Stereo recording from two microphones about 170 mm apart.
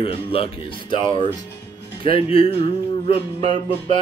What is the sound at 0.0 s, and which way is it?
Music, 35° left (ahead or behind).